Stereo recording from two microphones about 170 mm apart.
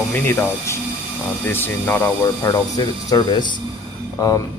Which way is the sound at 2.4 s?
20° left (ahead or behind).